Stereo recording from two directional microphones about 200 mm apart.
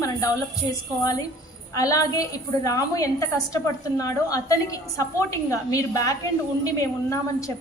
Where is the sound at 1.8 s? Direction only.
15° left (ahead or behind).